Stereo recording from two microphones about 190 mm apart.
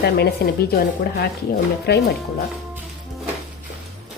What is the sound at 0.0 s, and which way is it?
Speech, 55° left (ahead or behind).